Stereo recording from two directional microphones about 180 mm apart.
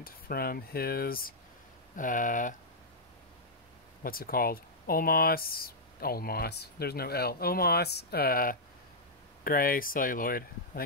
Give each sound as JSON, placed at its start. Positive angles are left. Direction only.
{"t": 0.0, "sound": "speech", "side_deg": 55}
{"t": 4.0, "sound": "speech", "side_deg": 55}